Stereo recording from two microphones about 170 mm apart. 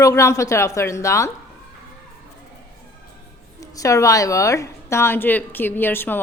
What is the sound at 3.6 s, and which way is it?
A woman's voice, 20° left (ahead or behind).